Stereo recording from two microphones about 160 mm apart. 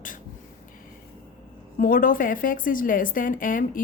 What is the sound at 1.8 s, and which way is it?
A woman's voice, 60° left (ahead or behind).